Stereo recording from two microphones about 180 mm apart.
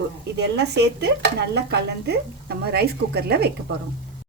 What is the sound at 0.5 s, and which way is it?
Speech, 70° right (ahead or behind).